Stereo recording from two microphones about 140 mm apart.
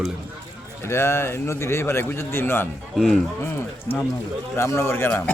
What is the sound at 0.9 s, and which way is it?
A man's voice, 20° left (ahead or behind).